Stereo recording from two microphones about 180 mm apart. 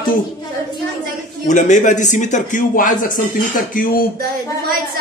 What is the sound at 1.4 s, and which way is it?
Speech, 45° left (ahead or behind).